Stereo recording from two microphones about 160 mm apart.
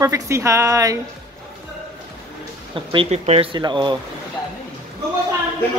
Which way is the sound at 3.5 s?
30° right (ahead or behind).